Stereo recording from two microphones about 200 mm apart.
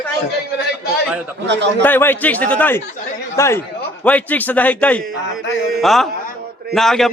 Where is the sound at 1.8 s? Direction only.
10° left (ahead or behind).